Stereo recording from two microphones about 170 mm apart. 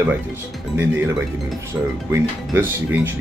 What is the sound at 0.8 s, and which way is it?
Speech, 15° right (ahead or behind).